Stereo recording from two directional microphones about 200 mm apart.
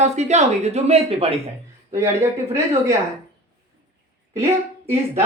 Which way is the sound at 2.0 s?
15° right (ahead or behind).